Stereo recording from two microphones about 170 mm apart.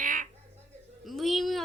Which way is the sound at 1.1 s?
Centre (ahead or behind).